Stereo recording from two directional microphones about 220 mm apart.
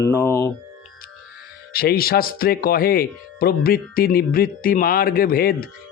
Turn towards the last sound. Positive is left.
turn(degrees=45)  # may be behind; listen again after turning